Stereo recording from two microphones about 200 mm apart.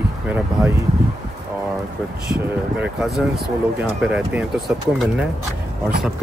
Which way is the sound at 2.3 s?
5° right (ahead or behind).